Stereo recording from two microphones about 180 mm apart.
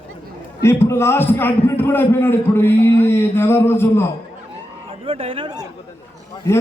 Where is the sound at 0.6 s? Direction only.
15° left (ahead or behind).